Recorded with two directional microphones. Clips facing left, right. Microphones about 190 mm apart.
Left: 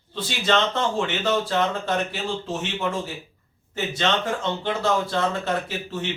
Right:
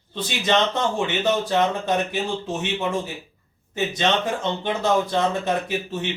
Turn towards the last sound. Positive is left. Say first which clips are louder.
# right 3 dB
turn(degrees=-15)  # may be behind; listen again after turning